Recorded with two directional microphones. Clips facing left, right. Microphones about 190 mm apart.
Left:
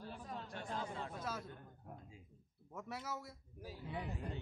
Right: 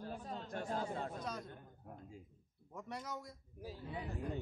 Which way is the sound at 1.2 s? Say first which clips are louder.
Even; 5° left (ahead or behind).